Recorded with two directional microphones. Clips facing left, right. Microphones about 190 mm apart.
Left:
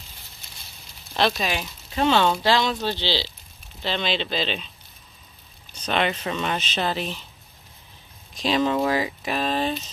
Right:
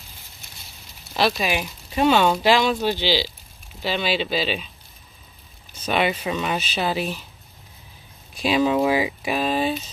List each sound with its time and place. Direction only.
1.1 s speech: 5° right (ahead or behind)
5.8 s speech: 10° right (ahead or behind)
8.4 s speech: 10° right (ahead or behind)